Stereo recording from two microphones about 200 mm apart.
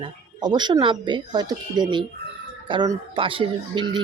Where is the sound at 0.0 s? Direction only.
20° right (ahead or behind).